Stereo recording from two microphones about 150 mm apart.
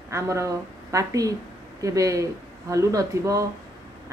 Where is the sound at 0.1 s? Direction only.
20° right (ahead or behind).